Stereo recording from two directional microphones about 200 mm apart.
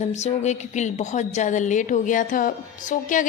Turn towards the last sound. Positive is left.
turn(degrees=40)  # may be behind; listen again after turning